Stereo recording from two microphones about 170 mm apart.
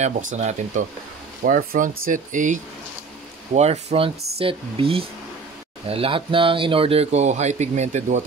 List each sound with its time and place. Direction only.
0.0 s speech: 45° right (ahead or behind)